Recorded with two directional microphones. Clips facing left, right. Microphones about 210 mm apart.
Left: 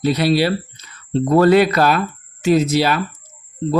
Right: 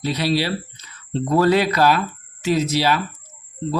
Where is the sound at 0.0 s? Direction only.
55° left (ahead or behind).